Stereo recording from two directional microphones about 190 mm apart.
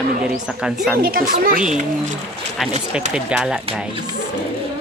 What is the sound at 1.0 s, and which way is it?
Speech, 50° right (ahead or behind).